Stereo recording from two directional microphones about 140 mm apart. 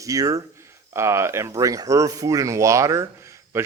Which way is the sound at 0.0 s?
25° right (ahead or behind).